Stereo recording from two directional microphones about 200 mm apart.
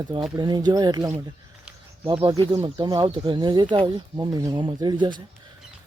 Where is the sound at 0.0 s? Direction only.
20° right (ahead or behind).